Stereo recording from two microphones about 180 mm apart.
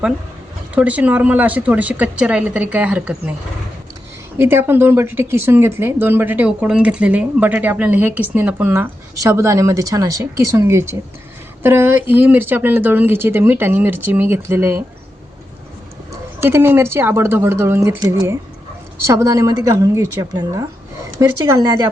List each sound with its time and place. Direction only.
0.7 s speech: 10° right (ahead or behind)
4.4 s speech: 10° right (ahead or behind)
16.4 s a woman's voice: 15° right (ahead or behind)